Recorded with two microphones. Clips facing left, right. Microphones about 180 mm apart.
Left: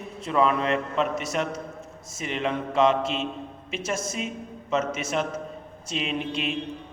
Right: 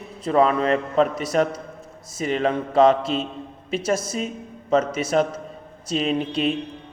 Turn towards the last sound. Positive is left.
turn(degrees=-35)  # may be behind; listen again after turning